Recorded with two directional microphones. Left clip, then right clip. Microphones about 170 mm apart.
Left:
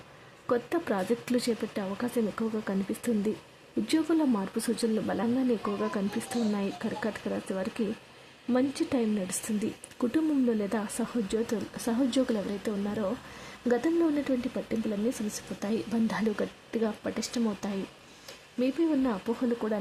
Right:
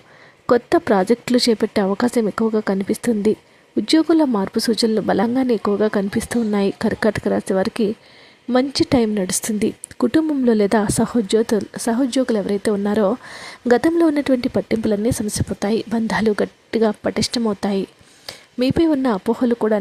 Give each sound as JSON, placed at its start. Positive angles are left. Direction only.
{"t": 0.4, "sound": "speech", "side_deg": -40}